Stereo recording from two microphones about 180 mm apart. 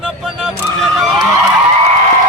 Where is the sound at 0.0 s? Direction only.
5° right (ahead or behind).